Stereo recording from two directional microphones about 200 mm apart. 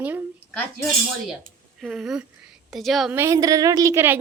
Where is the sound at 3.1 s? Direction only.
15° right (ahead or behind).